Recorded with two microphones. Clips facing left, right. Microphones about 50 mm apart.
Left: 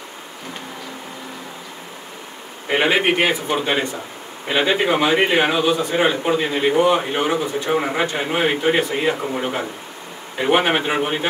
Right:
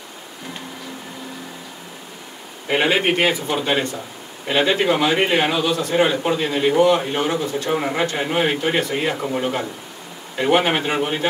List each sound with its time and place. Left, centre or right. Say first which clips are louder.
2.7 s a man's voice: left 1 dB; centre
3.6 s a man's voice: even; centre